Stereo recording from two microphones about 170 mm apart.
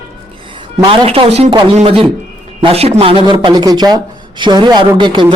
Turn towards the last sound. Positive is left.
turn(degrees=-30)  # may be behind; listen again after turning